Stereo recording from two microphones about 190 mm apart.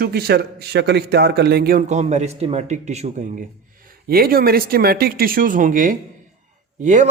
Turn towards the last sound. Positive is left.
turn(degrees=-40)  # may be behind; listen again after turning